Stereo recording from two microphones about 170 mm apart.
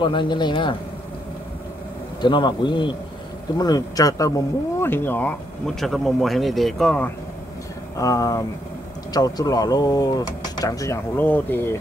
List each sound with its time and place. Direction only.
0.0 s speech: 25° left (ahead or behind)
2.2 s speech: 25° left (ahead or behind); by 5.3 s 10° left (ahead or behind)
5.8 s speech: centre (ahead or behind)
8.0 s speech: 20° left (ahead or behind)